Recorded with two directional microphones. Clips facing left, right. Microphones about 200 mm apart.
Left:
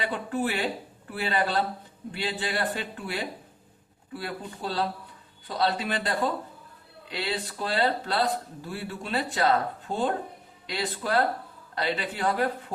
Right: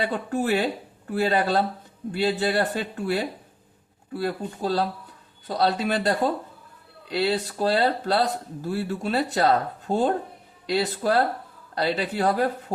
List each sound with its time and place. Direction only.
0.0 s speech: 45° right (ahead or behind)